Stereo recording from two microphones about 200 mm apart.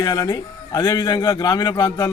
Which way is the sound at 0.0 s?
20° left (ahead or behind).